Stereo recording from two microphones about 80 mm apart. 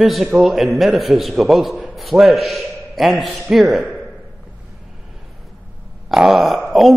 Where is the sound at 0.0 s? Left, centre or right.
Centre.